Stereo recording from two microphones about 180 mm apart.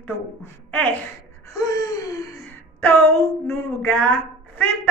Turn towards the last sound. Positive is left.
turn(degrees=10)  # may be behind; listen again after turning